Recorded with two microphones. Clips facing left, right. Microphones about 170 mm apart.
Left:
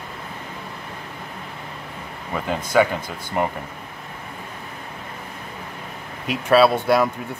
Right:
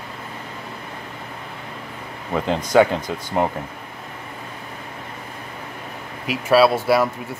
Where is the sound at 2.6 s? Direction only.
20° right (ahead or behind).